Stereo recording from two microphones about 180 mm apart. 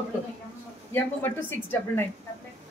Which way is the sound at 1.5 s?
10° left (ahead or behind).